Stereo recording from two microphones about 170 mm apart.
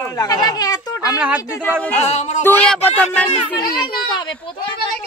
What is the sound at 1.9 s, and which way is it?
Speech, 40° left (ahead or behind).